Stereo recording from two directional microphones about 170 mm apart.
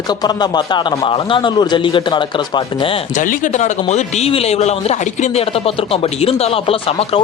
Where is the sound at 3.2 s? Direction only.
50° left (ahead or behind).